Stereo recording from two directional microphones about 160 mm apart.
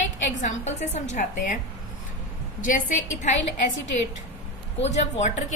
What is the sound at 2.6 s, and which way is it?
Speech, 55° left (ahead or behind).